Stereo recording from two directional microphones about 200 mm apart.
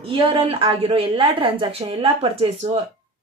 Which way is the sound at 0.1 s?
25° right (ahead or behind).